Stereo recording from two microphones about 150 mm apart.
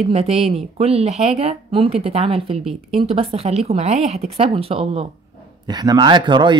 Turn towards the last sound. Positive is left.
turn(degrees=-30)  # may be behind; listen again after turning